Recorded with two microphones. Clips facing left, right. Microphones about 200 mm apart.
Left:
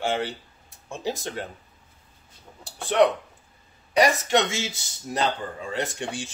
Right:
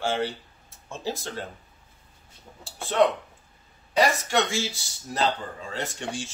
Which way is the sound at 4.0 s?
20° left (ahead or behind).